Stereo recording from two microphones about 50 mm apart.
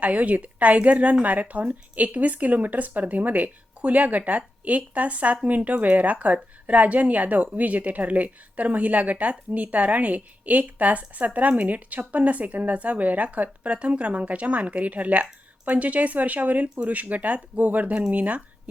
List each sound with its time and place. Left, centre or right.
0.0 s speech: right